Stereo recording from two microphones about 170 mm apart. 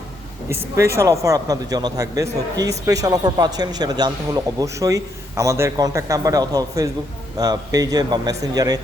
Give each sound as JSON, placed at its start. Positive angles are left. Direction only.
{"t": 0.4, "sound": "a man's voice", "side_deg": -15}